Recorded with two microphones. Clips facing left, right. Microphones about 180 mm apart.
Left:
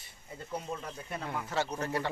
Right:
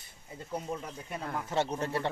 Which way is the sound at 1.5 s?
25° right (ahead or behind).